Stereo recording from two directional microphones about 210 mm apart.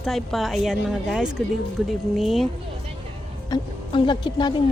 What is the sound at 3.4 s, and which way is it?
Speech, 20° left (ahead or behind).